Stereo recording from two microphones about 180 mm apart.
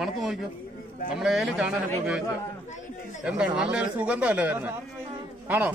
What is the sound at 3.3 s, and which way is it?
A man's voice, 5° right (ahead or behind).